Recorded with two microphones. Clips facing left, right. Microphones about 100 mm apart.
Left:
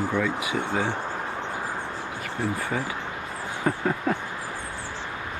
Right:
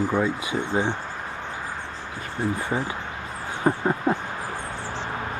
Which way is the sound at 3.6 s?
25° right (ahead or behind).